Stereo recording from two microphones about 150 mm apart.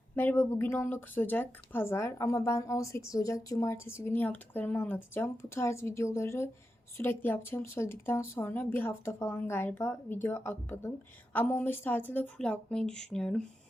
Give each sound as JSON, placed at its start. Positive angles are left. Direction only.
{"t": 0.2, "sound": "speech", "side_deg": 10}